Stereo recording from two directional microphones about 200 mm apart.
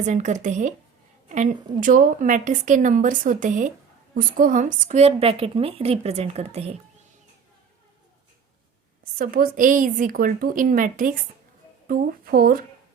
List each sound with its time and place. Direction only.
0.0 s a woman's voice: 35° right (ahead or behind)
9.1 s a woman's voice: 45° right (ahead or behind)